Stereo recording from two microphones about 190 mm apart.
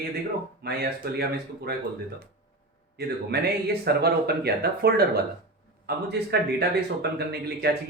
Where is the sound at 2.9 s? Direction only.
60° right (ahead or behind).